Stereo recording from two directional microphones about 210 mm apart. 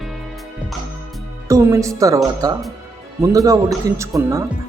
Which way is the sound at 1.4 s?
15° right (ahead or behind).